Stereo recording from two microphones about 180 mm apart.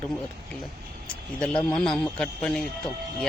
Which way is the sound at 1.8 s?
5° left (ahead or behind).